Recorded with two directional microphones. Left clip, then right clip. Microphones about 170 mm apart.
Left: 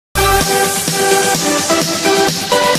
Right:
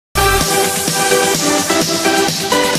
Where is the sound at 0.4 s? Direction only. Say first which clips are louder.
Left 1 dB; centre (ahead or behind).